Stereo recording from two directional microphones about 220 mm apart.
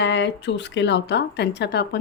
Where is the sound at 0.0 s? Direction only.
55° left (ahead or behind).